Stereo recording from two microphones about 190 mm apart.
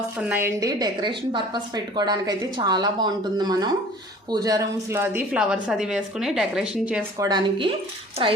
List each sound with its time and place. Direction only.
0.2 s a woman's voice: 10° right (ahead or behind)
7.2 s a woman's voice: 20° right (ahead or behind)